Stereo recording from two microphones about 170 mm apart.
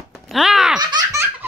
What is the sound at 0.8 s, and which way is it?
Laughter, 25° right (ahead or behind).